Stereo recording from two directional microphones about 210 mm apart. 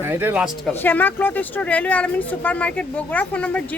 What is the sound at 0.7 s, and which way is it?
A woman's voice, 10° left (ahead or behind).